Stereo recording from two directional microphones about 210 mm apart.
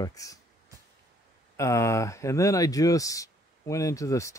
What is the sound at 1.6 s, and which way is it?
Speech, 15° left (ahead or behind).